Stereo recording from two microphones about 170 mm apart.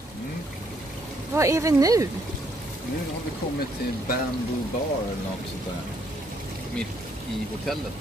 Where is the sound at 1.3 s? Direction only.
15° right (ahead or behind).